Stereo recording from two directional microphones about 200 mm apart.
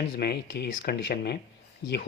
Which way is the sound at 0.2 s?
55° left (ahead or behind).